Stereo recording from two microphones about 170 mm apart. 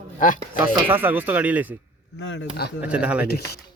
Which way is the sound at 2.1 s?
90° left.